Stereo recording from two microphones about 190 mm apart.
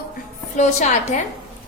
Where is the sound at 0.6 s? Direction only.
40° left (ahead or behind).